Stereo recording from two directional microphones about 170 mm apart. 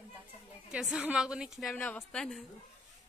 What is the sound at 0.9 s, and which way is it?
Speech, 5° right (ahead or behind).